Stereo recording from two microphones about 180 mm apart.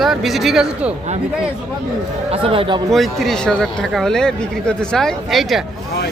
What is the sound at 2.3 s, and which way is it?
Speech, 30° right (ahead or behind).